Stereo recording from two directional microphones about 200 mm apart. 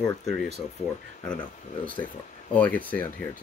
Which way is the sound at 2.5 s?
10° left (ahead or behind).